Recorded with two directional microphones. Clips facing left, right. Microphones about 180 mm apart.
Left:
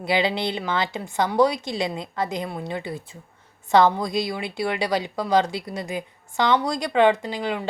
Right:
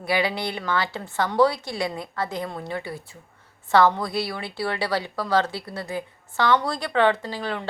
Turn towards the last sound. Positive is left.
turn(degrees=15)  # may be behind; listen again after turning